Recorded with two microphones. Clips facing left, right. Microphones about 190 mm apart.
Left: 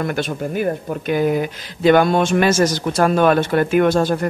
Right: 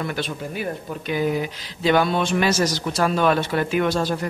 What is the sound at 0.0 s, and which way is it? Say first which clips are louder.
Speech: left 5 dB; 50° left (ahead or behind).